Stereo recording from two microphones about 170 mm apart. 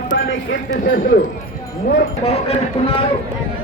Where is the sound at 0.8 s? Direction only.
55° left (ahead or behind).